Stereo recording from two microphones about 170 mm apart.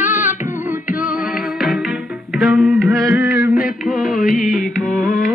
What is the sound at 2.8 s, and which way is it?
Music, 20° right (ahead or behind).